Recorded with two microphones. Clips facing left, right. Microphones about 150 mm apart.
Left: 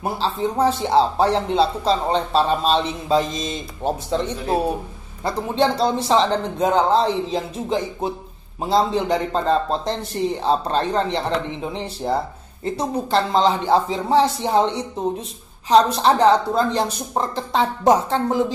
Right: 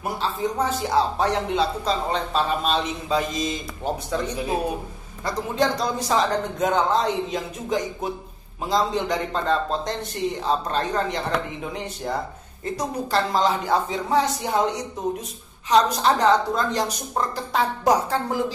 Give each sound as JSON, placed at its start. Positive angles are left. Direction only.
{"t": 0.0, "sound": "a man's voice", "side_deg": 30}